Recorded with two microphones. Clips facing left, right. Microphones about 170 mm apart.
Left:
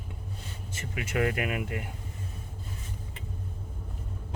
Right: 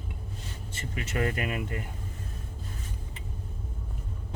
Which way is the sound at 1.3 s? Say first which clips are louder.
Left 1 dB; 15° left (ahead or behind).